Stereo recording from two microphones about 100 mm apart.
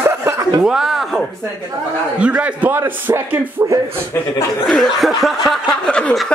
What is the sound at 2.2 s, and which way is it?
Speech, 10° right (ahead or behind).